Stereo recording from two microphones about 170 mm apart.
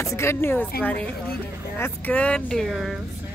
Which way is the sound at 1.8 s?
10° left (ahead or behind).